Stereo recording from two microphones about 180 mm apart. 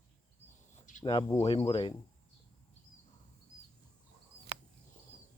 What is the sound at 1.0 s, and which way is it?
Speech, 25° left (ahead or behind).